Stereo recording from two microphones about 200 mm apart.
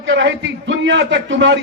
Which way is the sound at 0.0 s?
65° right (ahead or behind).